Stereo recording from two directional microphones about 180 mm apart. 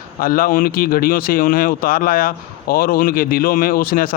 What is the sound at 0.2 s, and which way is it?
Speech, 50° left (ahead or behind).